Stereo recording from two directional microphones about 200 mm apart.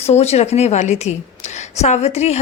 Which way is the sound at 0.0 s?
30° left (ahead or behind).